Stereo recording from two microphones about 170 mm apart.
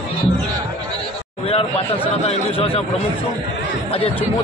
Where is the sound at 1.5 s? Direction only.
35° left (ahead or behind).